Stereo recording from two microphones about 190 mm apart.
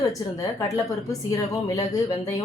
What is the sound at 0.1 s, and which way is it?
A woman's voice, 15° left (ahead or behind).